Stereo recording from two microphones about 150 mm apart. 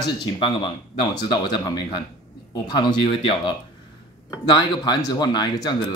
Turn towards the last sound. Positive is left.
turn(degrees=25)  # may be behind; listen again after turning